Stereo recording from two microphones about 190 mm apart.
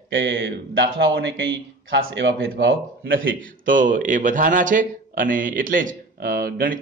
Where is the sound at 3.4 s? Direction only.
45° right (ahead or behind).